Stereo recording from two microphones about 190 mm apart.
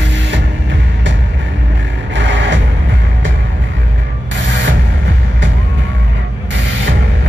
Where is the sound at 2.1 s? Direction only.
70° right (ahead or behind).